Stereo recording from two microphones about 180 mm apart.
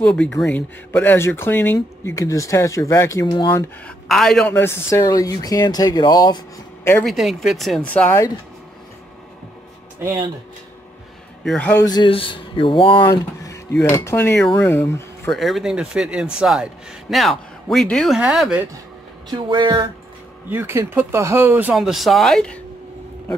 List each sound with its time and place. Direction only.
0.0 s speech: 5° left (ahead or behind); by 3.6 s 25° left (ahead or behind)
3.8 s speech: centre (ahead or behind)
4.6 s speech: 15° left (ahead or behind)
7.1 s speech: centre (ahead or behind)
9.9 s speech: 15° right (ahead or behind)
11.4 s speech: 5° left (ahead or behind)
11.8 s speech: 25° left (ahead or behind)
15.2 s speech: centre (ahead or behind)
19.2 s speech: 25° right (ahead or behind)
20.4 s speech: 10° right (ahead or behind)